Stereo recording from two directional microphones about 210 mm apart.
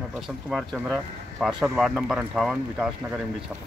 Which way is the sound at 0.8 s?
5° right (ahead or behind).